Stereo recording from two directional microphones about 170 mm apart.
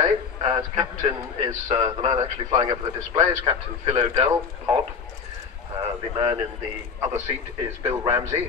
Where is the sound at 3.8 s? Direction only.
35° right (ahead or behind).